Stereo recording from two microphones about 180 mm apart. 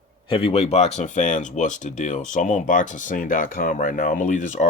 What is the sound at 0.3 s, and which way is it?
Speech, 30° left (ahead or behind).